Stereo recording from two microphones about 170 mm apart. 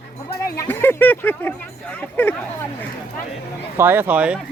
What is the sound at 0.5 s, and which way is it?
Speech, 10° left (ahead or behind).